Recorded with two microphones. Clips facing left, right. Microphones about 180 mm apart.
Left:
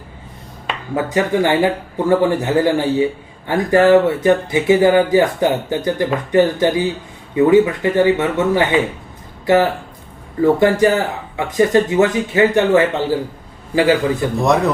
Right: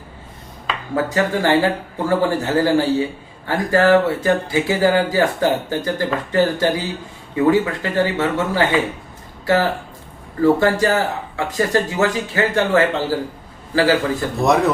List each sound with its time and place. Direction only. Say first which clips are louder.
0.9 s a man's voice: left 3 dB; 20° left (ahead or behind)
14.4 s speech: even; centre (ahead or behind)